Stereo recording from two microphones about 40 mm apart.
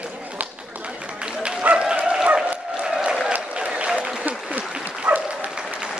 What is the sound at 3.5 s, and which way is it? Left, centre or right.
Applause, right.